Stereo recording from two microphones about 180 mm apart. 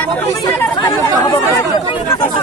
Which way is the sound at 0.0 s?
10° left (ahead or behind).